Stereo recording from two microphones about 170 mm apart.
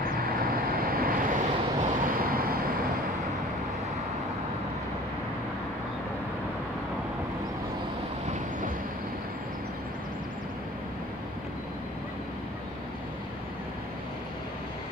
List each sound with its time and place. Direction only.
0.7 s vehicle: 60° right (ahead or behind)